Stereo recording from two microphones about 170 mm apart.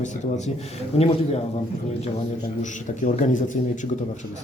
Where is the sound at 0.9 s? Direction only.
35° left (ahead or behind).